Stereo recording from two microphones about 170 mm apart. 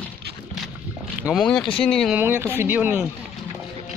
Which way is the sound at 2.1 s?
10° right (ahead or behind).